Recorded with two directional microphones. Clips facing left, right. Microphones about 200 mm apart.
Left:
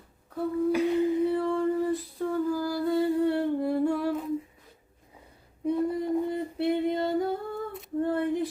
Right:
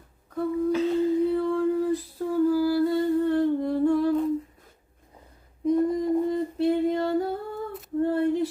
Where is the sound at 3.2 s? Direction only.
10° left (ahead or behind).